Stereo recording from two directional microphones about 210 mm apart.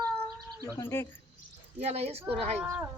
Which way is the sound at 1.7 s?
30° right (ahead or behind).